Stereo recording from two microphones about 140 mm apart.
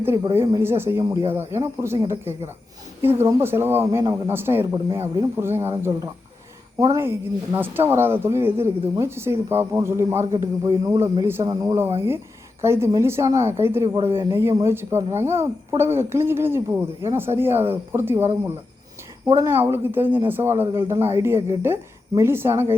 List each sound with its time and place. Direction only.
0.6 s speech: 15° right (ahead or behind)
6.7 s speech: 20° right (ahead or behind)
11.9 s speech: 15° right (ahead or behind)